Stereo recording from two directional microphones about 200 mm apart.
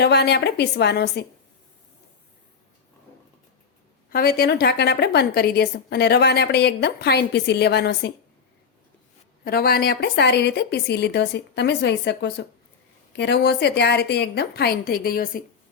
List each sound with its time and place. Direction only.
0.0 s a woman's voice: 55° left (ahead or behind)
4.1 s a woman's voice: 50° left (ahead or behind)
9.4 s a woman's voice: 50° left (ahead or behind)